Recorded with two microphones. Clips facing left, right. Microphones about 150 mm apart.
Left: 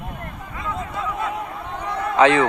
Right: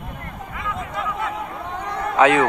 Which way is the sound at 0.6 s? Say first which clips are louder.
Even; 20° left (ahead or behind).